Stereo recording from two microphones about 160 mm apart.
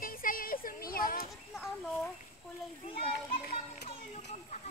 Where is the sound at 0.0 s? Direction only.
60° left (ahead or behind).